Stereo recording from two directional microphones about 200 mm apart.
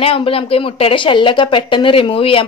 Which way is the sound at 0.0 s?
30° left (ahead or behind).